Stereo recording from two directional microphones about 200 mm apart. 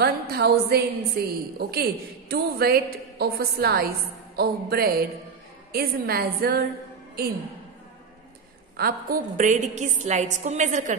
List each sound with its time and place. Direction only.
0.0 s a woman's voice: 50° right (ahead or behind)
8.7 s a woman's voice: 45° right (ahead or behind)